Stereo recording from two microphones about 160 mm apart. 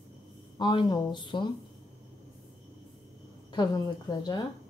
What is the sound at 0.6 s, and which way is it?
Speech, 25° left (ahead or behind).